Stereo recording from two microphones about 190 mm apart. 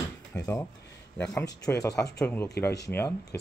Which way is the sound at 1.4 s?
15° left (ahead or behind).